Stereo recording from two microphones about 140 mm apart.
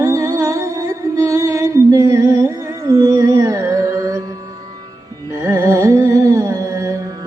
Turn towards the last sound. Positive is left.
turn(degrees=-20)  # may be behind; listen again after turning